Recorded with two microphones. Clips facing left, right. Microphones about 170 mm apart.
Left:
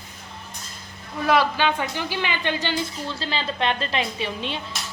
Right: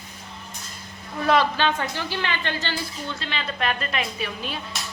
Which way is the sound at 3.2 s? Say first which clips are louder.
Left 4 dB; 30° left (ahead or behind).